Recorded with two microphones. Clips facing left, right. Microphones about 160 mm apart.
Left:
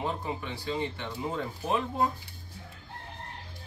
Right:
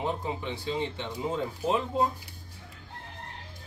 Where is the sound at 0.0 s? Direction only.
20° right (ahead or behind).